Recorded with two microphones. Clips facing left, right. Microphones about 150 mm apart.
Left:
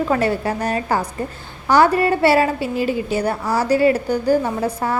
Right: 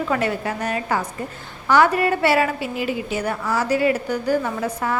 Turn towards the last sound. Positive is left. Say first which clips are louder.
# left 3 dB
turn(degrees=30)  # may be behind; listen again after turning